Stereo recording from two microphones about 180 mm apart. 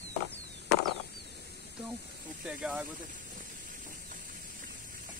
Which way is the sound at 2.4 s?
5° right (ahead or behind).